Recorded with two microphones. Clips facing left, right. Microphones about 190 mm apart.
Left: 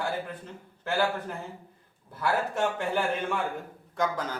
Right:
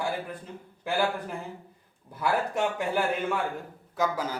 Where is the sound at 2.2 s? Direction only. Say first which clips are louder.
Right 1 dB; 15° right (ahead or behind).